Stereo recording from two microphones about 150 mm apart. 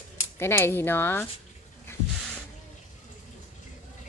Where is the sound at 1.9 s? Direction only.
15° left (ahead or behind).